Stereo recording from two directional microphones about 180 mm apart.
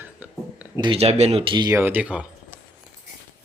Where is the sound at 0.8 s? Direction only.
30° right (ahead or behind).